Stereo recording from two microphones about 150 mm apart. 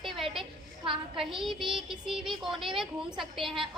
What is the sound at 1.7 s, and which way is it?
A child's voice, 5° right (ahead or behind).